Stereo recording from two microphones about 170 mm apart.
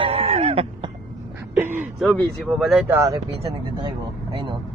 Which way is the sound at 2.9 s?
20° right (ahead or behind).